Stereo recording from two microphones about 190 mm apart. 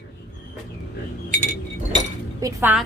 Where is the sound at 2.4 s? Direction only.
10° right (ahead or behind).